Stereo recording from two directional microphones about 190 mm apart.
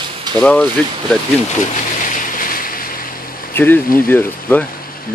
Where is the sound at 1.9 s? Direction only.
40° left (ahead or behind).